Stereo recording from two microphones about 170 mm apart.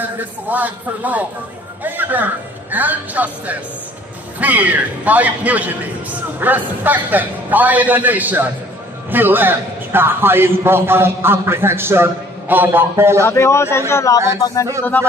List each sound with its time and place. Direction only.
0.0 s a man's voice: 10° right (ahead or behind)
13.2 s a man's voice: 15° left (ahead or behind)